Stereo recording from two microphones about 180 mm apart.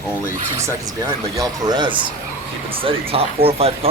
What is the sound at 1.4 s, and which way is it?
Speech, 20° right (ahead or behind).